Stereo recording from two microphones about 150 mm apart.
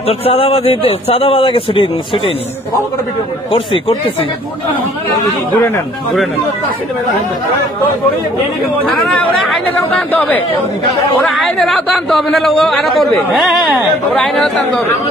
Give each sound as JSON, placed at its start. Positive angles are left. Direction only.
{"t": 0.0, "sound": "speech", "side_deg": 40}
{"t": 3.5, "sound": "speech", "side_deg": 35}
{"t": 8.8, "sound": "speech", "side_deg": 10}
{"t": 11.4, "sound": "a man's voice", "side_deg": 0}
{"t": 14.1, "sound": "a man's voice", "side_deg": 5}